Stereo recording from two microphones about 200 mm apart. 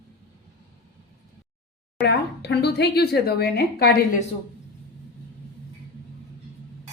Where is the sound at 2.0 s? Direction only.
55° left (ahead or behind).